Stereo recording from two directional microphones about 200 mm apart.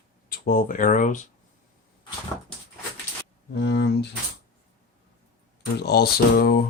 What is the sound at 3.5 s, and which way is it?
Speech, 55° left (ahead or behind).